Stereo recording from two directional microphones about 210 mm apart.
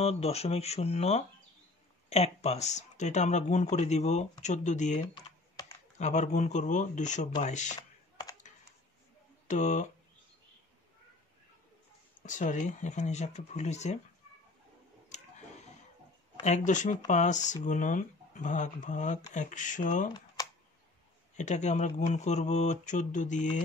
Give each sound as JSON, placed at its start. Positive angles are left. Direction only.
{"t": 0.0, "sound": "speech", "side_deg": 30}
{"t": 9.5, "sound": "speech", "side_deg": 35}
{"t": 12.2, "sound": "speech", "side_deg": 35}
{"t": 15.1, "sound": "a sound", "side_deg": 35}
{"t": 16.4, "sound": "speech", "side_deg": 35}
{"t": 21.4, "sound": "speech", "side_deg": 35}